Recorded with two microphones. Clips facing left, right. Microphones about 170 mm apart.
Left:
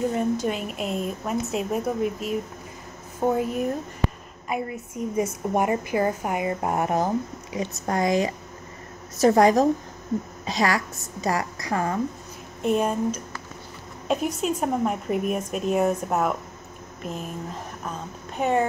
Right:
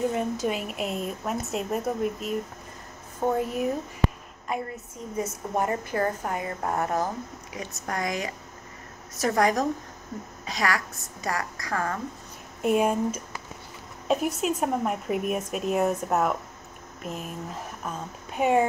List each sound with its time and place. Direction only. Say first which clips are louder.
0.1 s a woman's voice: left 3 dB; centre (ahead or behind)
4.5 s a woman's voice: left 3 dB; 10° left (ahead or behind)
12.6 s a woman's voice: even; 5° right (ahead or behind)